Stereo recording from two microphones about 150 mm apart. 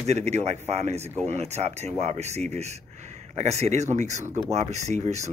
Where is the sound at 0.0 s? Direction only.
45° right (ahead or behind).